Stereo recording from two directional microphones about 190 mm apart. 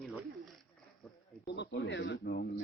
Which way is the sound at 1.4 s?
65° left (ahead or behind).